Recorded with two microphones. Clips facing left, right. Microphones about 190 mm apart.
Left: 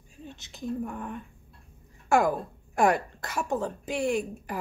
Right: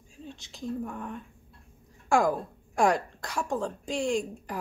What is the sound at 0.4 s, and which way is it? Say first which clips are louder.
A woman's voice: left 2 dB; 5° left (ahead or behind).